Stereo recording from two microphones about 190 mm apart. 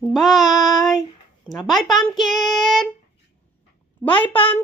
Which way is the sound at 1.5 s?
Centre (ahead or behind).